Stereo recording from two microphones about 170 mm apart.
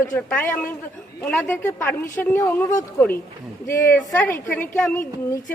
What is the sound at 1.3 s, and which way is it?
A woman's voice, 10° left (ahead or behind).